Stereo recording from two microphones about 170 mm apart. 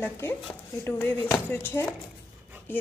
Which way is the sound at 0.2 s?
10° left (ahead or behind).